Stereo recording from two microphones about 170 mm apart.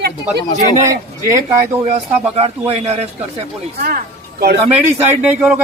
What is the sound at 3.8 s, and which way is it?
Speech, 65° right (ahead or behind).